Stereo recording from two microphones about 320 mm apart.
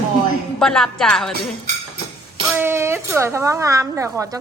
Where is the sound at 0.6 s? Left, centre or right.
Centre.